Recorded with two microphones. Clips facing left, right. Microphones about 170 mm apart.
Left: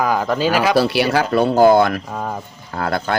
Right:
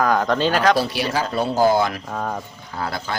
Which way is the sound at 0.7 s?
70° left (ahead or behind).